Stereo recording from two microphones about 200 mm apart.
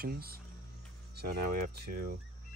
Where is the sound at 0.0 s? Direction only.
50° right (ahead or behind).